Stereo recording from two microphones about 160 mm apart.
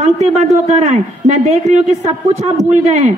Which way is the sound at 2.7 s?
50° right (ahead or behind).